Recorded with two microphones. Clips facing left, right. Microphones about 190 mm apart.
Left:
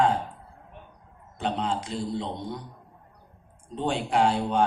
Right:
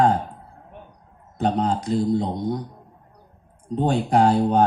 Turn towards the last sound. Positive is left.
turn(degrees=-40)  # may be behind; listen again after turning